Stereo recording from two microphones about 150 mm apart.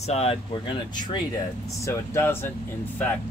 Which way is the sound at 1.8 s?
15° left (ahead or behind).